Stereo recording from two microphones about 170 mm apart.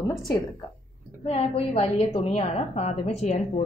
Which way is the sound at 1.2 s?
35° left (ahead or behind).